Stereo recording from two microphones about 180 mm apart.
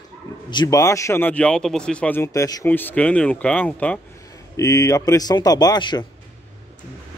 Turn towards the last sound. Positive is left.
turn(degrees=25)  # may be behind; listen again after turning